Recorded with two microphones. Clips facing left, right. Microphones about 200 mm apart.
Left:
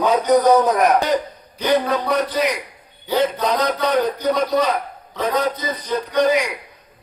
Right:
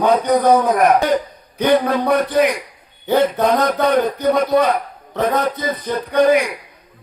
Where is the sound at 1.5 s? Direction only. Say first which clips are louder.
Right 3 dB; 55° right (ahead or behind).